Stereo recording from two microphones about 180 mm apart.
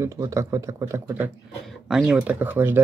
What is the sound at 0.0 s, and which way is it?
Speech, 15° right (ahead or behind).